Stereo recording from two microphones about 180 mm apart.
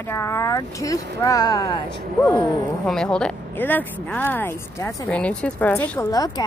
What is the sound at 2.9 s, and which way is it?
Speech, 5° left (ahead or behind).